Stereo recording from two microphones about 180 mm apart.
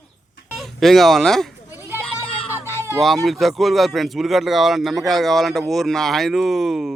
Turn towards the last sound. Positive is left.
turn(degrees=-5)  # may be behind; listen again after turning